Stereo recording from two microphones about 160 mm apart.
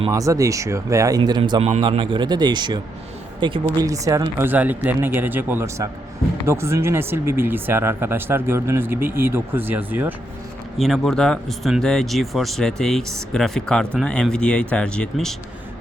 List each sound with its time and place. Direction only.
0.1 s speech: 20° right (ahead or behind)
10.8 s speech: centre (ahead or behind)